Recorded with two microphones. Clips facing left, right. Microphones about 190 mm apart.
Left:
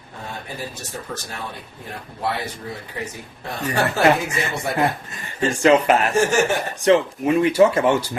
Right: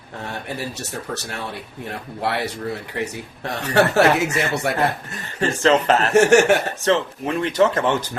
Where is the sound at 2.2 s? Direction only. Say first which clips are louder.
Right 2 dB; 75° right (ahead or behind).